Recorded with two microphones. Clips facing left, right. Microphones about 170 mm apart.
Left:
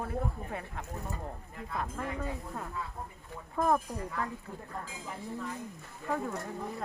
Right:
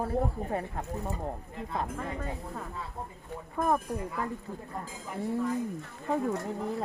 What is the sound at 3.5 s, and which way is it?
Speech, 5° right (ahead or behind).